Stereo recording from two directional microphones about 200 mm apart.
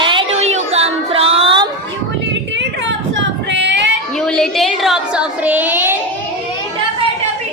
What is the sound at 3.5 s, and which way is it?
Child singing, 60° right (ahead or behind).